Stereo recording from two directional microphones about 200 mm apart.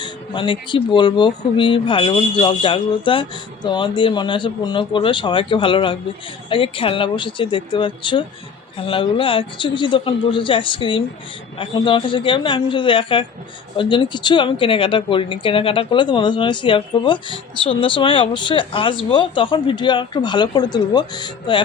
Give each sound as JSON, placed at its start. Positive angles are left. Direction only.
{"t": 0.0, "sound": "speech", "side_deg": 25}